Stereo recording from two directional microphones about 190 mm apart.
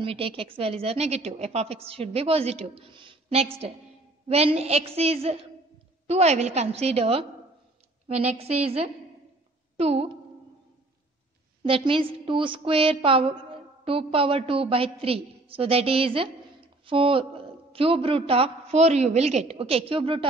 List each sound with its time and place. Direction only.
0.0 s a woman's voice: 30° right (ahead or behind)
11.6 s a woman's voice: 30° right (ahead or behind)